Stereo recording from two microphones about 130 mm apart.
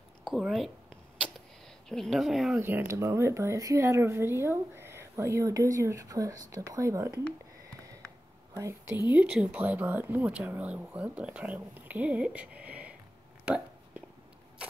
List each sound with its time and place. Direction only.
0.2 s speech: centre (ahead or behind)
1.9 s speech: centre (ahead or behind)
2.6 s speech: 15° right (ahead or behind)
8.5 s speech: 20° right (ahead or behind)
9.1 s speech: 10° right (ahead or behind)